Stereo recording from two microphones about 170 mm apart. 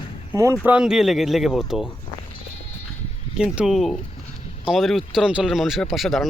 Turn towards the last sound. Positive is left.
turn(degrees=0)  # may be behind; listen again after turning